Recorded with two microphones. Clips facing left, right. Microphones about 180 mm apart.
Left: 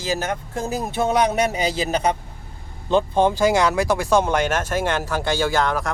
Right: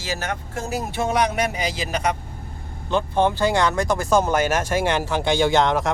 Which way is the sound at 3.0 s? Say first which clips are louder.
Left 2 dB; 15° left (ahead or behind).